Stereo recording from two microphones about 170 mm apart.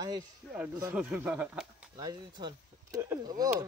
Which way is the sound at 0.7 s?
10° right (ahead or behind).